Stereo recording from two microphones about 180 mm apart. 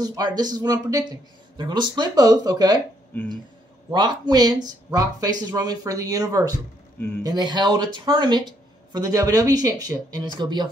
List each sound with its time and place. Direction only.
0.0 s speech: 20° right (ahead or behind)
3.9 s speech: 25° right (ahead or behind)